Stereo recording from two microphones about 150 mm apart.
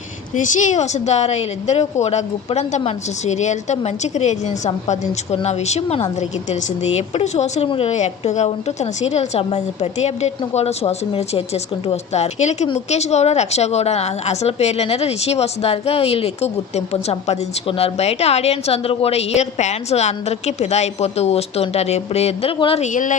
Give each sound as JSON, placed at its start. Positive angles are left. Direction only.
{"t": 0.3, "sound": "a woman's voice", "side_deg": 55}
{"t": 22.9, "sound": "a woman's voice", "side_deg": 60}